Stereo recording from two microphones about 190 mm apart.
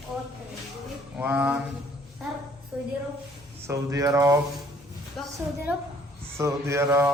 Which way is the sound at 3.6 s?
15° right (ahead or behind).